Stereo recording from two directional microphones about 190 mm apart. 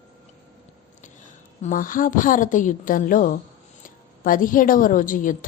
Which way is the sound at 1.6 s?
45° left (ahead or behind).